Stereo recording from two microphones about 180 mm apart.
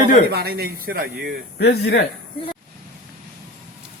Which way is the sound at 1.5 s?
65° left (ahead or behind).